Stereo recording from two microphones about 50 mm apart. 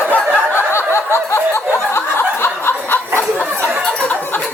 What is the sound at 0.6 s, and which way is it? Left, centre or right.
Snicker, left.